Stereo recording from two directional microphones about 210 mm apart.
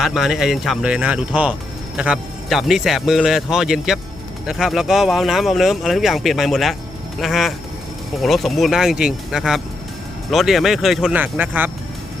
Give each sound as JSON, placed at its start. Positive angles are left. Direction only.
{"t": 0.0, "sound": "speech", "side_deg": 0}